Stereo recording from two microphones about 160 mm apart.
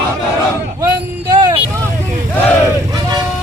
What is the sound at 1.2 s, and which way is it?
Vehicle, 30° right (ahead or behind).